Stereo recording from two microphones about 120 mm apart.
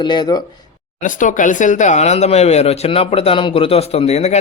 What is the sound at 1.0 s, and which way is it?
Speech, 90° left.